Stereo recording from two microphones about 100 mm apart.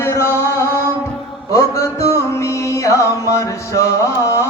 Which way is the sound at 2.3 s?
30° left (ahead or behind).